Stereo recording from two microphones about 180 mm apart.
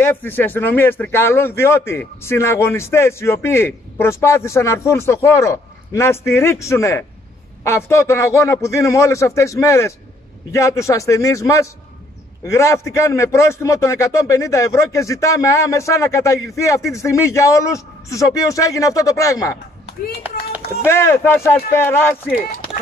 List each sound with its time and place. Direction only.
0.0 s a man's voice: 10° left (ahead or behind)
20.8 s a man's voice: 15° left (ahead or behind)